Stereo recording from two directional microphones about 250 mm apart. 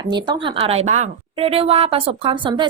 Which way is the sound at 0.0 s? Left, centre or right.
Centre.